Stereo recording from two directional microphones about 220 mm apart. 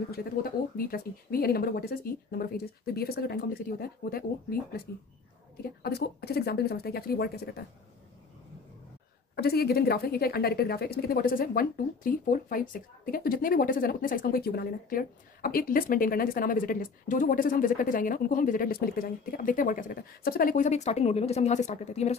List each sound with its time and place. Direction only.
0.1 s speech: 45° left (ahead or behind)
9.3 s speech: 45° left (ahead or behind)